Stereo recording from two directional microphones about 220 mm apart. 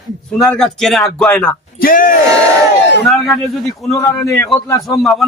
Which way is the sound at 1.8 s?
40° left (ahead or behind).